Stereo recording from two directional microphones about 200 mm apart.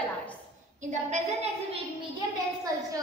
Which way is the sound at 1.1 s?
30° right (ahead or behind).